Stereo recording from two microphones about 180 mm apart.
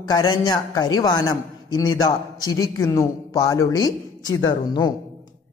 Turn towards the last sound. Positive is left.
turn(degrees=20)  # may be behind; listen again after turning